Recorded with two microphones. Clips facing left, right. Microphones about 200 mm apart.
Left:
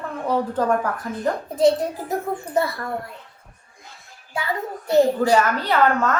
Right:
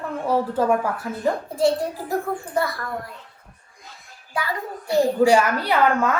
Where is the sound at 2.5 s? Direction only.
25° left (ahead or behind).